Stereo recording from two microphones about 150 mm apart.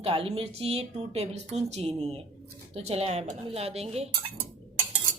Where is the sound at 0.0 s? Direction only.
40° right (ahead or behind).